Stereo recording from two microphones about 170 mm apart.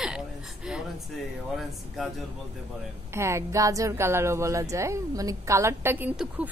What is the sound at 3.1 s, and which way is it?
Speech, 15° right (ahead or behind).